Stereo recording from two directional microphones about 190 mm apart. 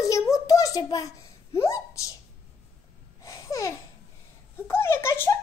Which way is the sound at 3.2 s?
15° left (ahead or behind).